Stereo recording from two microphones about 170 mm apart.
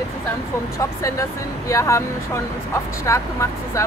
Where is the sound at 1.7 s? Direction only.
20° left (ahead or behind).